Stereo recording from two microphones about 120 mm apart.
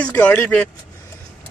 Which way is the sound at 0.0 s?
10° left (ahead or behind).